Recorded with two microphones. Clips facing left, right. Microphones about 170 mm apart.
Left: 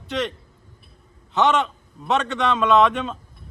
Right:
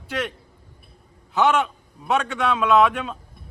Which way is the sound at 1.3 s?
Centre (ahead or behind).